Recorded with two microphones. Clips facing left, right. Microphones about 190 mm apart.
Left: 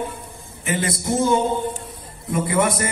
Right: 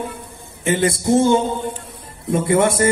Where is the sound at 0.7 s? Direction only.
30° right (ahead or behind).